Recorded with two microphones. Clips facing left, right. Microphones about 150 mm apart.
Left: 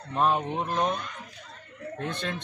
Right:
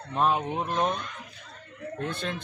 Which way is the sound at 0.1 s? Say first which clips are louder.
Even; centre (ahead or behind).